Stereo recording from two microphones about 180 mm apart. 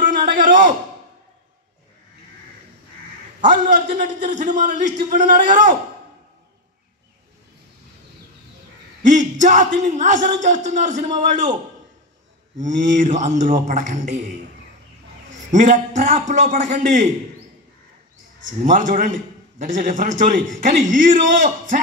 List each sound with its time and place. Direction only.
0.0 s a sound: 45° right (ahead or behind)
3.3 s a man's voice: 45° right (ahead or behind)
9.0 s a man's voice: 45° right (ahead or behind)
12.5 s a man's voice: 45° right (ahead or behind)
15.5 s a man's voice: 45° right (ahead or behind)
18.6 s a man's voice: 45° right (ahead or behind)